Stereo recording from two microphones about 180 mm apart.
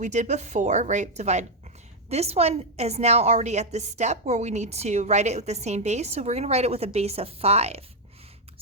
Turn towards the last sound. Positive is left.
turn(degrees=-35)  # may be behind; listen again after turning